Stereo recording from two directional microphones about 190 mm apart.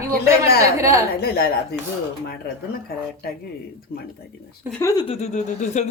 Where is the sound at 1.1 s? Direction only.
60° left (ahead or behind).